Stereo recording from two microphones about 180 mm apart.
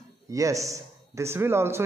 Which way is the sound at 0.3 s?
20° right (ahead or behind).